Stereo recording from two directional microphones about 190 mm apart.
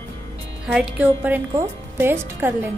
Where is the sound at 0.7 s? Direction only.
5° right (ahead or behind).